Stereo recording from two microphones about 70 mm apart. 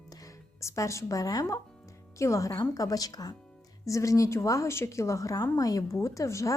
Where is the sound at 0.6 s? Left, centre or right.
Left.